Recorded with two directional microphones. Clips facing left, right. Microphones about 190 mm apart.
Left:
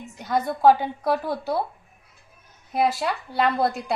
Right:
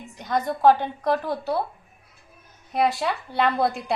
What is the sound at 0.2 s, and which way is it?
A woman's voice, 5° left (ahead or behind).